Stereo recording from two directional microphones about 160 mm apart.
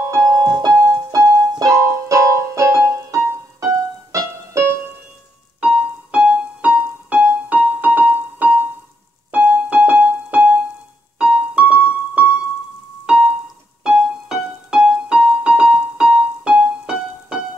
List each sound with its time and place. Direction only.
0.0 s keyboard: 20° right (ahead or behind)
5.6 s music: 5° right (ahead or behind)
9.3 s keyboard: 10° right (ahead or behind)
13.0 s music: 5° right (ahead or behind)